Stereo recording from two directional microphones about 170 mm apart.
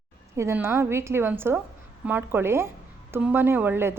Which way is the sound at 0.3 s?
15° right (ahead or behind).